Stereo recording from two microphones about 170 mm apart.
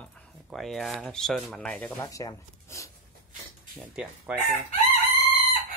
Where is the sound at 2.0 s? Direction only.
20° left (ahead or behind).